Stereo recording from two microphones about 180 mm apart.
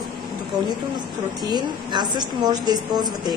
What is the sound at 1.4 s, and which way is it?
A woman's voice, 25° right (ahead or behind).